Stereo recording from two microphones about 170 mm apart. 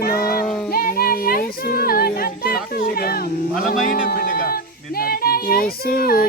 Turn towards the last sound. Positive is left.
turn(degrees=60)  # may be behind; listen again after turning